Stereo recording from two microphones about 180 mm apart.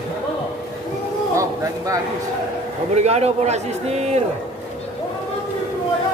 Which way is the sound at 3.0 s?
35° right (ahead or behind).